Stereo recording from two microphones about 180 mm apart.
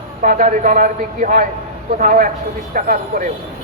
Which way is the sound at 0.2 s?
50° right (ahead or behind).